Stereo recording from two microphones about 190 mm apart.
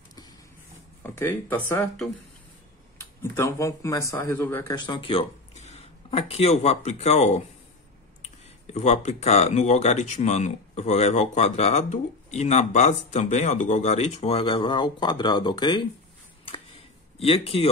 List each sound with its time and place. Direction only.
1.0 s speech: 15° left (ahead or behind)
4.7 s speech: 25° left (ahead or behind)
16.4 s a sound: 30° left (ahead or behind)